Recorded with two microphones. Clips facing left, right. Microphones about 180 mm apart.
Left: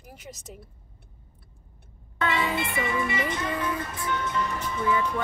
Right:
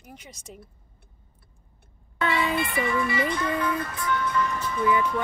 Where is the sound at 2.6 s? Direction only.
20° left (ahead or behind).